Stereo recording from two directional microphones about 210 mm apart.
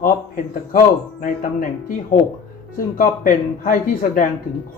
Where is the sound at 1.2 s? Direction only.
40° left (ahead or behind).